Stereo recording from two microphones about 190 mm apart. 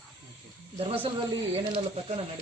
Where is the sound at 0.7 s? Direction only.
30° right (ahead or behind).